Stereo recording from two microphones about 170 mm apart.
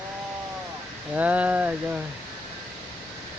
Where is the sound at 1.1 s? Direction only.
10° right (ahead or behind).